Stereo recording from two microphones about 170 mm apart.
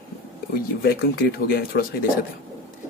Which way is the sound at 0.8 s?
65° left (ahead or behind).